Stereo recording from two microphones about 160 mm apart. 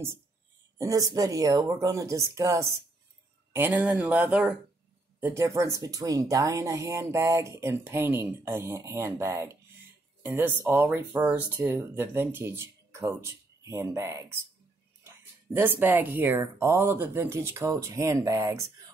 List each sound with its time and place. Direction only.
0.7 s speech: 20° right (ahead or behind)
15.5 s speech: 10° right (ahead or behind)